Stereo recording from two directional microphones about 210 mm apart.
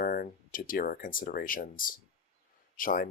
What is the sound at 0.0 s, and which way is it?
Speech, 45° left (ahead or behind).